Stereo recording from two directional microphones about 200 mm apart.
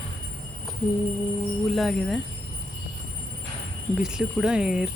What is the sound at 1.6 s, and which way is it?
Speech, centre (ahead or behind).